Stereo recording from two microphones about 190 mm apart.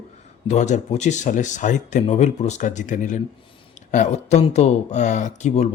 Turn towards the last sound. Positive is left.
turn(degrees=35)  # may be behind; listen again after turning